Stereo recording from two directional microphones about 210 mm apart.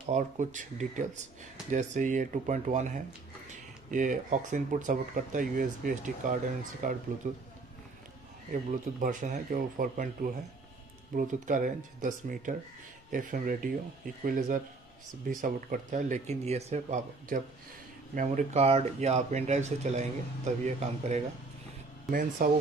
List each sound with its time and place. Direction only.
0.0 s speech: 35° right (ahead or behind)
9.0 s speech: 35° right (ahead or behind)
22.4 s speech: 40° right (ahead or behind)